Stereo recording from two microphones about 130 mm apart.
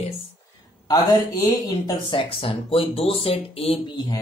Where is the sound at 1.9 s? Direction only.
40° left (ahead or behind).